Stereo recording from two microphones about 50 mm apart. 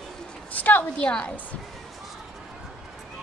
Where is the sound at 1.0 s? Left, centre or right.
Left.